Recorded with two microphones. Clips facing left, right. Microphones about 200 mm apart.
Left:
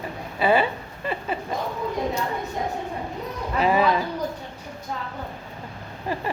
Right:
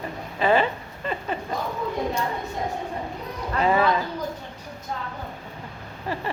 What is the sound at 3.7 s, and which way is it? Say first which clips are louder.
Speech: even; 15° left (ahead or behind).